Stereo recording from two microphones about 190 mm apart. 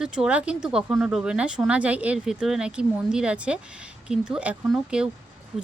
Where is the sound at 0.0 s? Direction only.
5° right (ahead or behind).